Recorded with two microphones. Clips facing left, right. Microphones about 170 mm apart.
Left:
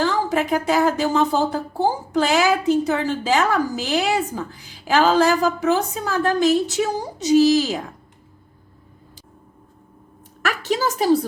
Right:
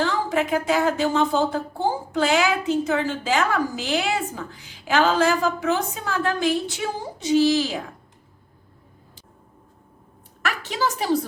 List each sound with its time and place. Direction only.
0.0 s a woman's voice: 40° left (ahead or behind)
10.4 s a woman's voice: 40° left (ahead or behind)